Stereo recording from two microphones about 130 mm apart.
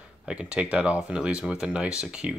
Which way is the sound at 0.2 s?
5° right (ahead or behind).